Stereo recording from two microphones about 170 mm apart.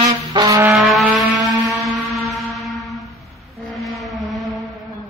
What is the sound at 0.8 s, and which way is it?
Vehicle, centre (ahead or behind).